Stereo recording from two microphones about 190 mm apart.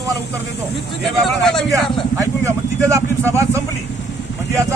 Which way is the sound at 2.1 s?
15° right (ahead or behind).